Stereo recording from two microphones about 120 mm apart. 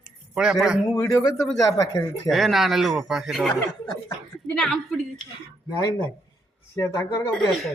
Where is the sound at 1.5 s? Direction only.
30° left (ahead or behind).